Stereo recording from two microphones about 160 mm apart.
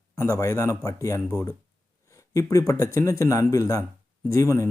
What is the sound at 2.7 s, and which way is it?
Speech, 20° left (ahead or behind).